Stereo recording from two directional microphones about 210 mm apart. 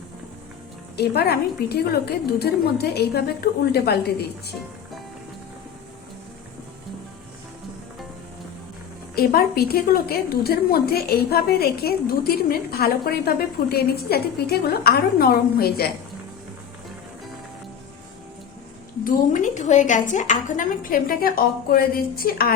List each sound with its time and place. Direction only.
0.9 s a woman's voice: 50° left (ahead or behind)
9.1 s a woman's voice: 45° left (ahead or behind)
19.0 s a woman's voice: 35° left (ahead or behind)